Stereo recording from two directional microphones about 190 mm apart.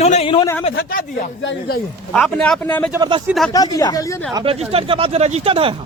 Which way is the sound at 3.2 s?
Centre (ahead or behind).